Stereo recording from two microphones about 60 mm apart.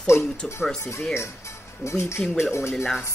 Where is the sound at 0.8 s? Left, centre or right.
Left.